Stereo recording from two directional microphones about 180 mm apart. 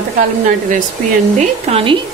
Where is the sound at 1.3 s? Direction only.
30° right (ahead or behind).